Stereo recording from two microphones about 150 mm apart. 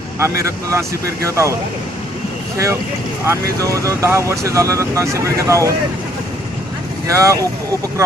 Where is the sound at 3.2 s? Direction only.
20° right (ahead or behind).